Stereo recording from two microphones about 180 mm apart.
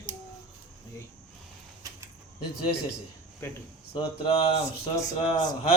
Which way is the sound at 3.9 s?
30° left (ahead or behind).